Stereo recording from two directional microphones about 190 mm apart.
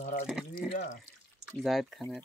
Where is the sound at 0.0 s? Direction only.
50° left (ahead or behind).